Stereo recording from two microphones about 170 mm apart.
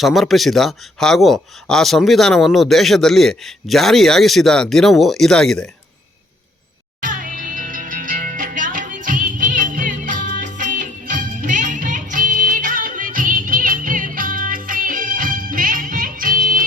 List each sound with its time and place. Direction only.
0.0 s speech: centre (ahead or behind)
7.0 s music: 55° right (ahead or behind)